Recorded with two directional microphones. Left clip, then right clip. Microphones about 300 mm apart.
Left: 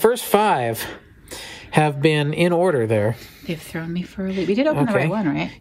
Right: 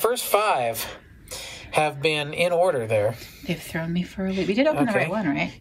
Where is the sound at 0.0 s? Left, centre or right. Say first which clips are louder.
Left 4 dB; left.